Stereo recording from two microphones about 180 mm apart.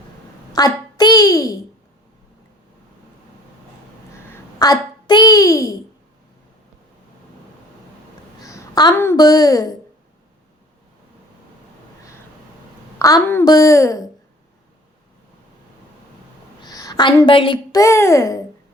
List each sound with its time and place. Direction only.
0.5 s a child's voice: 20° left (ahead or behind)
4.6 s a child's voice: 20° left (ahead or behind)
8.4 s a woman's voice: 20° left (ahead or behind)
13.0 s a woman's voice: 20° left (ahead or behind)
16.6 s a woman's voice: 20° left (ahead or behind)